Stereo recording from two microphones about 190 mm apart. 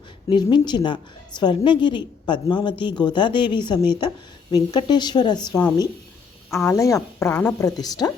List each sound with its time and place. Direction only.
0.3 s a woman's voice: 25° left (ahead or behind)
6.5 s a woman's voice: 15° left (ahead or behind)